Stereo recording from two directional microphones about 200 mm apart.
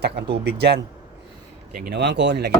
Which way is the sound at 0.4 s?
55° right (ahead or behind).